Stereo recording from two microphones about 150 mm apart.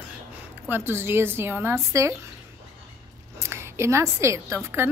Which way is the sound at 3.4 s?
15° right (ahead or behind).